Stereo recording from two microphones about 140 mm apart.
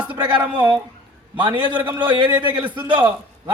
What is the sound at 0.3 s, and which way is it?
A man's voice, 30° right (ahead or behind).